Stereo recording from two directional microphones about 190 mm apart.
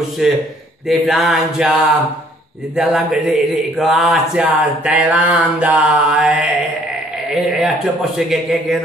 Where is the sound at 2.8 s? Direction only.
5° right (ahead or behind).